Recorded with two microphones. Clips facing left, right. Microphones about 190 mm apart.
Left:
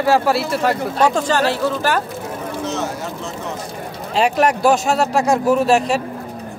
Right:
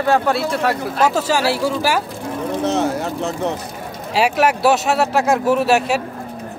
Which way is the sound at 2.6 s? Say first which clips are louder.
Right 6 dB; 60° right (ahead or behind).